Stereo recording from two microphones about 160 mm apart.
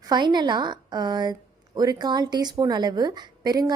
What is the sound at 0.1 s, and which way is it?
A woman's voice, 25° right (ahead or behind).